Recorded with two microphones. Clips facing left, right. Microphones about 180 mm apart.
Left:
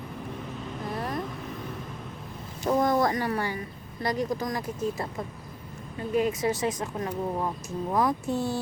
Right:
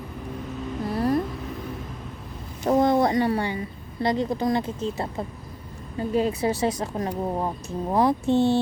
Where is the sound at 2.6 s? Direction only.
30° right (ahead or behind).